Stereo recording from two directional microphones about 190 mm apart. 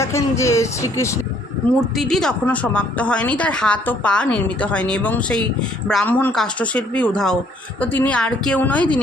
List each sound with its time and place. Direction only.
0.0 s a woman's voice: 15° left (ahead or behind)
2.0 s a woman's voice: centre (ahead or behind)